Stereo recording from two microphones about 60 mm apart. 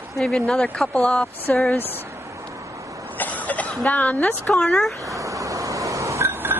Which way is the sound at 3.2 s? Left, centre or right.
Left.